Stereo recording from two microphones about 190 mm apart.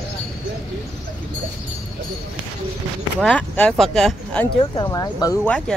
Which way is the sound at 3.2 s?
5° left (ahead or behind).